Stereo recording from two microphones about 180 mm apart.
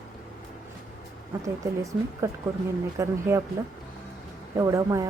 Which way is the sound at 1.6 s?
20° right (ahead or behind).